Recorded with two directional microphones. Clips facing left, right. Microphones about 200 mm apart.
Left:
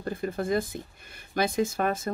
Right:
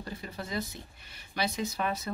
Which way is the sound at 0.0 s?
50° left (ahead or behind).